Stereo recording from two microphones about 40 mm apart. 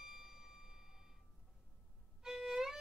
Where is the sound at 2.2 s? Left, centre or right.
Centre.